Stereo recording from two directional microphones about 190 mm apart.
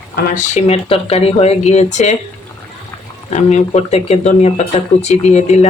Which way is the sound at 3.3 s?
35° left (ahead or behind).